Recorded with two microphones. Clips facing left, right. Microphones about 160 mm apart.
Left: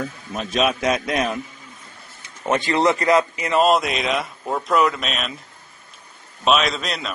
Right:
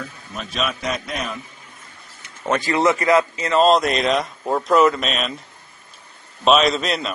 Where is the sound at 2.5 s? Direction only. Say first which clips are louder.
Even; 25° left (ahead or behind).